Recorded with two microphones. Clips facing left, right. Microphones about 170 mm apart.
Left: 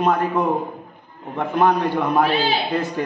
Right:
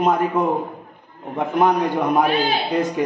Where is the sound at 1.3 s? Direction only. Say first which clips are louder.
Even; 15° right (ahead or behind).